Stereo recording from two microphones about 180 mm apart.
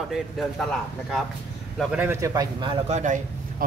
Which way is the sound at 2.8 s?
40° right (ahead or behind).